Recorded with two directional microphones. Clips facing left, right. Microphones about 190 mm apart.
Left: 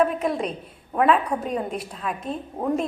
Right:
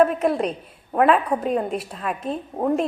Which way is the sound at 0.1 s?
5° right (ahead or behind).